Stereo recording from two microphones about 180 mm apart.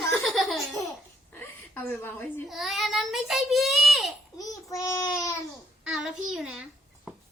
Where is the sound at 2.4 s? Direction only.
Centre (ahead or behind).